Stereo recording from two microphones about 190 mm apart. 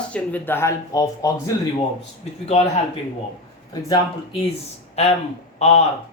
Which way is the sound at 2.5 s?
35° left (ahead or behind).